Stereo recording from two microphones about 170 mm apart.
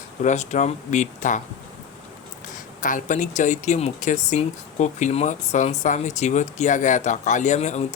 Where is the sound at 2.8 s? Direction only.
50° left (ahead or behind).